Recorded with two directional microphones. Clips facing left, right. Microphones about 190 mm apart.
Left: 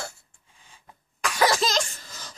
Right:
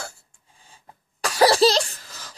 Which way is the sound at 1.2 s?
35° right (ahead or behind).